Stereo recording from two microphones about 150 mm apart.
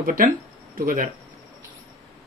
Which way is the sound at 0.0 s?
60° right (ahead or behind).